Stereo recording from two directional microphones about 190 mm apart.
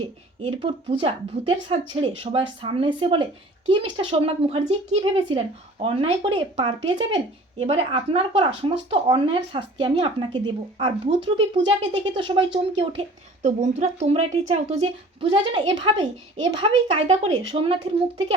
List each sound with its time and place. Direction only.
0.4 s a woman's voice: 30° right (ahead or behind)